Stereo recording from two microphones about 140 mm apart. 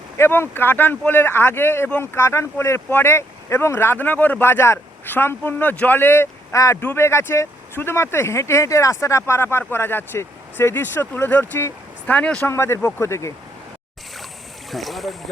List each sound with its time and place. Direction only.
0.2 s speech: 15° left (ahead or behind)
12.5 s speech: 20° left (ahead or behind)
14.7 s speech: centre (ahead or behind)